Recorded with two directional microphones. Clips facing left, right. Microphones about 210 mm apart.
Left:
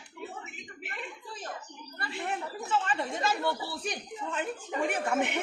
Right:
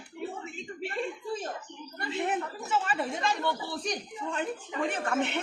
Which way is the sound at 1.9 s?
20° right (ahead or behind).